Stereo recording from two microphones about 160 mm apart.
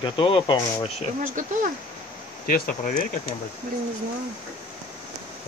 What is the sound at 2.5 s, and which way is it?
Speech, 65° left (ahead or behind).